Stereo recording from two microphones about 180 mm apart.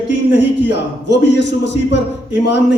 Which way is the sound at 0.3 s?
75° left (ahead or behind).